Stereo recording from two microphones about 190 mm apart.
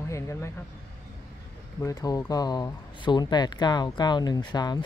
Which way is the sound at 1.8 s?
20° left (ahead or behind).